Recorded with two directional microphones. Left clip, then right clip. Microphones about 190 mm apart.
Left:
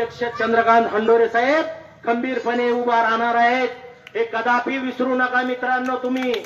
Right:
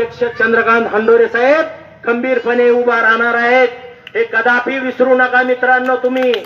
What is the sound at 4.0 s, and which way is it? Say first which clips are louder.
A man's voice: right 8 dB; 40° left (ahead or behind).